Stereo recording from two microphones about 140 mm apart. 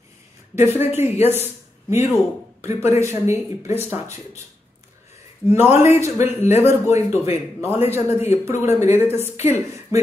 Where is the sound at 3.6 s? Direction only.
50° left (ahead or behind).